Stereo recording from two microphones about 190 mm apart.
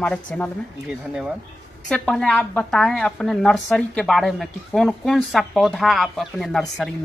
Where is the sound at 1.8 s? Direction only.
5° left (ahead or behind).